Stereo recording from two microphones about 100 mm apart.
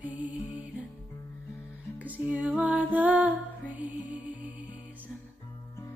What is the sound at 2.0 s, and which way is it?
Music, 15° right (ahead or behind).